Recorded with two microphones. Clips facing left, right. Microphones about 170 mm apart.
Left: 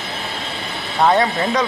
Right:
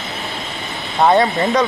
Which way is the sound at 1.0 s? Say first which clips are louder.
Right 2 dB; 10° right (ahead or behind).